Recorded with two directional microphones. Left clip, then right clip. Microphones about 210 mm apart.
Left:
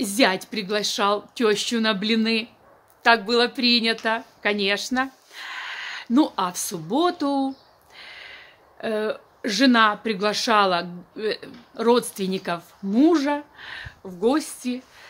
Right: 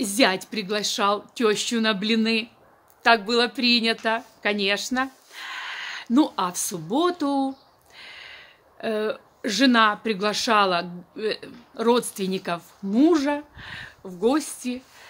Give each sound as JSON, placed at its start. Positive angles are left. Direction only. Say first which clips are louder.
{"t": 0.0, "sound": "a woman's voice", "louder": "left 1 dB", "side_deg": -5}